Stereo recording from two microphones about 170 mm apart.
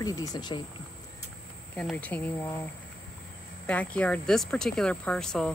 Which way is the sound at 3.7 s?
5° left (ahead or behind).